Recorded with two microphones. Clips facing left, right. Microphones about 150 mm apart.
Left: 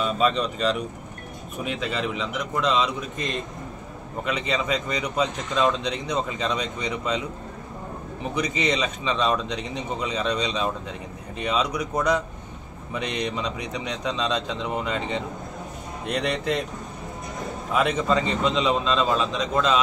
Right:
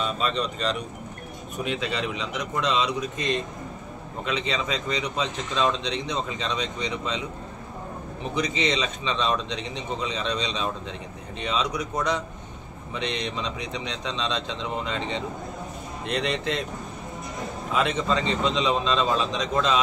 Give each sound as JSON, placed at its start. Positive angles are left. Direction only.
{"t": 0.2, "sound": "a man's voice", "side_deg": 5}
{"t": 8.6, "sound": "a man's voice", "side_deg": 10}
{"t": 16.1, "sound": "a man's voice", "side_deg": 5}
{"t": 17.7, "sound": "a man's voice", "side_deg": 5}